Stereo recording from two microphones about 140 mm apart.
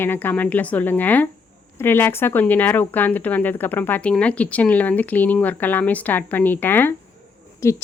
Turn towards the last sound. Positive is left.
turn(degrees=20)  # may be behind; listen again after turning